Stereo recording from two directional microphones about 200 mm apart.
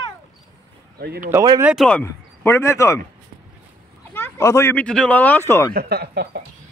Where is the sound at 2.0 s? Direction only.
15° left (ahead or behind).